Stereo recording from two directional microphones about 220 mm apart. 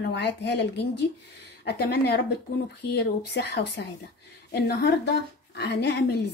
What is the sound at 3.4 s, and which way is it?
Speech, 50° left (ahead or behind).